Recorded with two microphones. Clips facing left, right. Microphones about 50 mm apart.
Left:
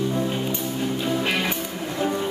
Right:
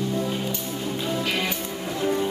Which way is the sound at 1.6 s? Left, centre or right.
Centre.